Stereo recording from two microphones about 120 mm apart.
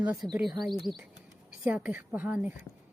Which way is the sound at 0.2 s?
20° right (ahead or behind).